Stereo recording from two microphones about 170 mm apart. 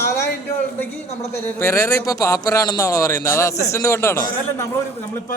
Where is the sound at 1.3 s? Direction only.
15° left (ahead or behind).